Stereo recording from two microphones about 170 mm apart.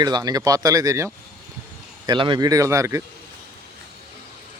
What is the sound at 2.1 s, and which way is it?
Speech, 25° right (ahead or behind).